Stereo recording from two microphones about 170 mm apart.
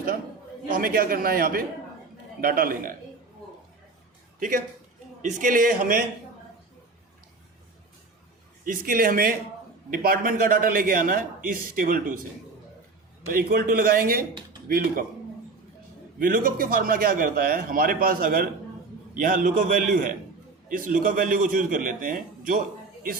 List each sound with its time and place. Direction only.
0.7 s a man's voice: 60° right (ahead or behind)
4.4 s a man's voice: 50° right (ahead or behind)
8.6 s a man's voice: 55° right (ahead or behind)
13.3 s a man's voice: 60° right (ahead or behind)
16.1 s a man's voice: 55° right (ahead or behind)